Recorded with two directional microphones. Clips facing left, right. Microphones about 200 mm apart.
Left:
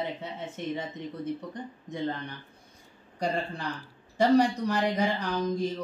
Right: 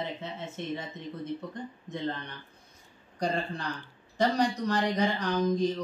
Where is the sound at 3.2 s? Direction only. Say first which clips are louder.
Even; 5° left (ahead or behind).